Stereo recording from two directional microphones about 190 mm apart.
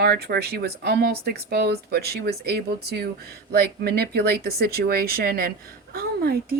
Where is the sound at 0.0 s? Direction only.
55° right (ahead or behind).